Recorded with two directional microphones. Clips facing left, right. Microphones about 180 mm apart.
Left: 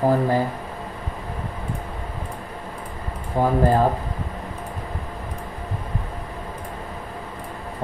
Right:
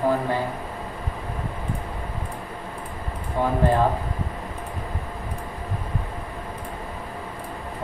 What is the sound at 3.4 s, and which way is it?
Speech, 40° left (ahead or behind).